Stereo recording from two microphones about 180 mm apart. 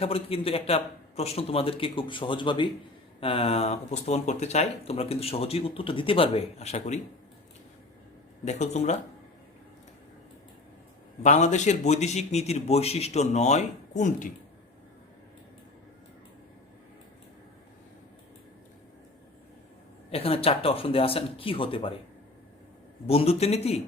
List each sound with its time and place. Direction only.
0.0 s speech: 30° left (ahead or behind)
8.4 s speech: 40° left (ahead or behind)
11.2 s speech: 40° left (ahead or behind)
20.1 s speech: 35° left (ahead or behind)
23.0 s speech: 35° left (ahead or behind)